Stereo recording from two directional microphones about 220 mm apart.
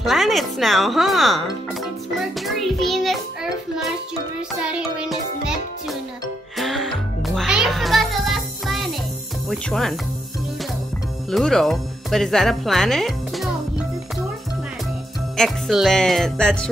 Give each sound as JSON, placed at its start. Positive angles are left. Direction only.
{"t": 0.0, "sound": "speech", "side_deg": 0}
{"t": 4.6, "sound": "music", "side_deg": -5}
{"t": 9.5, "sound": "speech", "side_deg": 0}
{"t": 11.2, "sound": "speech", "side_deg": 0}
{"t": 15.3, "sound": "speech", "side_deg": 0}